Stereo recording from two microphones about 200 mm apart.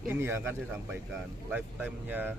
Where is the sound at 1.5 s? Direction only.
10° right (ahead or behind).